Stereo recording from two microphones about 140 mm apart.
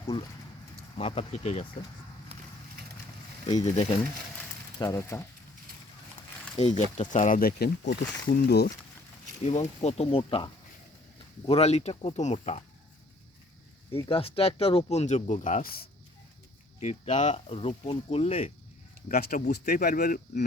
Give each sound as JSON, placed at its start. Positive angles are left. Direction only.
{"t": 0.1, "sound": "speech", "side_deg": 40}
{"t": 3.4, "sound": "speech", "side_deg": 55}
{"t": 4.8, "sound": "speech", "side_deg": 25}
{"t": 6.6, "sound": "speech", "side_deg": 55}
{"t": 9.4, "sound": "speech", "side_deg": 50}
{"t": 11.4, "sound": "speech", "side_deg": 45}
{"t": 14.1, "sound": "speech", "side_deg": 40}
{"t": 16.8, "sound": "speech", "side_deg": 50}
{"t": 19.0, "sound": "speech", "side_deg": 90}